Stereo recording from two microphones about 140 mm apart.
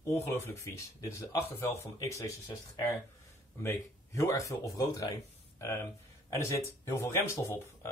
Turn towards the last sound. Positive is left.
turn(degrees=20)  # may be behind; listen again after turning